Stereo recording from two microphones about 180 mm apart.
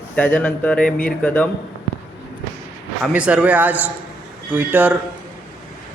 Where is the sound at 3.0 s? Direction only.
5° right (ahead or behind).